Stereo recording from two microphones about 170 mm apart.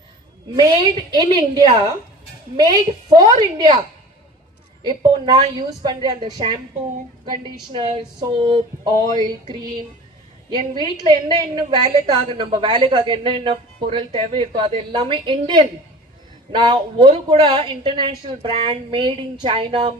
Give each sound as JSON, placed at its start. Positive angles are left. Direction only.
{"t": 0.5, "sound": "a woman's voice", "side_deg": -25}
{"t": 4.8, "sound": "a woman's voice", "side_deg": -25}
{"t": 11.0, "sound": "a woman's voice", "side_deg": -25}